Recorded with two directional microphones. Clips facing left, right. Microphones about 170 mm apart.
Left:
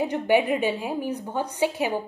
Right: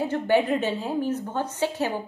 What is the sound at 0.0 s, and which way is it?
A woman's voice, 15° left (ahead or behind).